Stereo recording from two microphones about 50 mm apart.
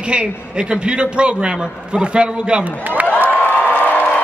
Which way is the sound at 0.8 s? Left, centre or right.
Centre.